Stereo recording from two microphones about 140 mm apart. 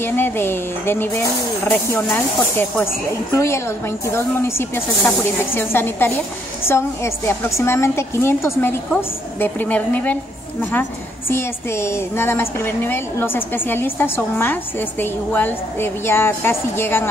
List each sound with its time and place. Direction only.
0.0 s a woman's voice: 15° left (ahead or behind)